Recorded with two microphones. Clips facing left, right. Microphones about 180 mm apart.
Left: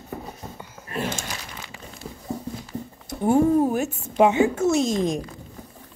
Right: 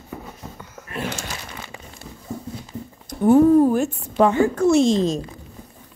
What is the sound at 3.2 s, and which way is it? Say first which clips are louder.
Speech: right 5 dB; 10° left (ahead or behind).